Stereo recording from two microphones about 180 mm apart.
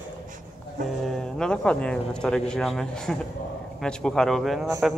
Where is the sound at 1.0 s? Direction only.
Centre (ahead or behind).